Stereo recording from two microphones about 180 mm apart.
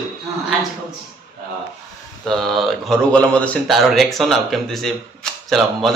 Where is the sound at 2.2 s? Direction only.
Centre (ahead or behind).